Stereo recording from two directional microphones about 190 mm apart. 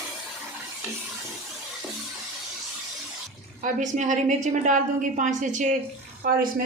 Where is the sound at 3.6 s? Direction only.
40° right (ahead or behind).